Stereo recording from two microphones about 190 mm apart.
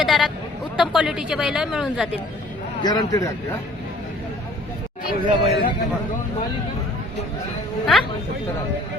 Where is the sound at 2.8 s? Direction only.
20° left (ahead or behind).